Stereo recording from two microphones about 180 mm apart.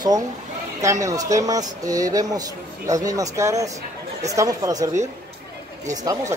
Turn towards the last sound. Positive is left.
turn(degrees=-20)  # may be behind; listen again after turning